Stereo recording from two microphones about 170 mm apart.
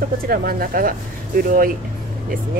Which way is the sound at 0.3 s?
60° right (ahead or behind).